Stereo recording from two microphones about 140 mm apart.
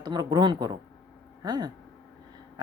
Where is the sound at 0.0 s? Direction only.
30° right (ahead or behind).